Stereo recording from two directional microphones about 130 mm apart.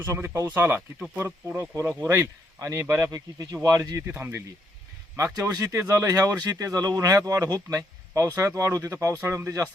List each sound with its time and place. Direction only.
0.0 s speech: 20° right (ahead or behind)